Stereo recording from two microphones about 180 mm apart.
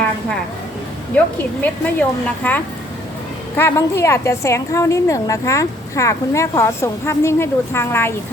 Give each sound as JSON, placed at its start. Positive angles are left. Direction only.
{"t": 1.6, "sound": "a woman's voice", "side_deg": 10}
{"t": 3.6, "sound": "a woman's voice", "side_deg": 15}